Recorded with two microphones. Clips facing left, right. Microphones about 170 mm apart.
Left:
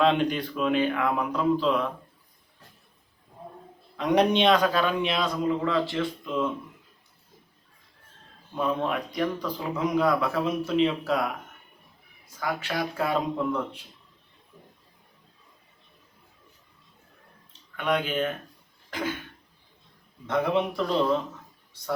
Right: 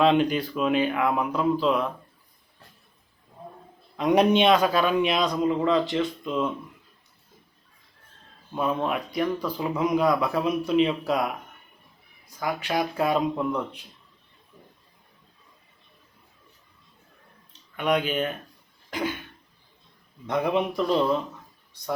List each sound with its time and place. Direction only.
0.0 s speech: 5° right (ahead or behind)
3.9 s a man's voice: 10° right (ahead or behind)
8.5 s a man's voice: 5° right (ahead or behind)
12.4 s a man's voice: 15° right (ahead or behind)
17.5 s speech: 15° right (ahead or behind)
18.9 s cough: 15° right (ahead or behind)
20.2 s a man's voice: 15° right (ahead or behind)